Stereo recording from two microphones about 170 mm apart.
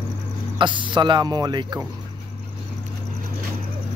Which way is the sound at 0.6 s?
30° right (ahead or behind).